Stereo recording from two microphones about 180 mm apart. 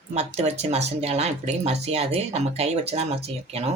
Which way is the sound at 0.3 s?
35° right (ahead or behind).